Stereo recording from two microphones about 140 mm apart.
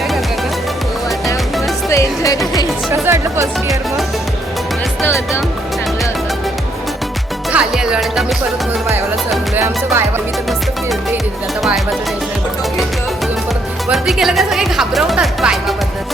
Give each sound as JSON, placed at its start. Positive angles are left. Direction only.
{"t": 1.9, "sound": "music", "side_deg": 25}
{"t": 2.9, "sound": "music", "side_deg": -20}
{"t": 7.5, "sound": "music", "side_deg": -5}
{"t": 9.6, "sound": "music", "side_deg": -15}
{"t": 11.6, "sound": "music", "side_deg": 0}
{"t": 13.9, "sound": "music", "side_deg": 0}